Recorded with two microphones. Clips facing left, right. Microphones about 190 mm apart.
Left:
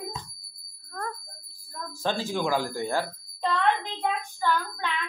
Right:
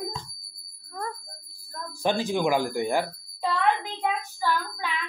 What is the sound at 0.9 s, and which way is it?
Bicycle bell, 10° right (ahead or behind).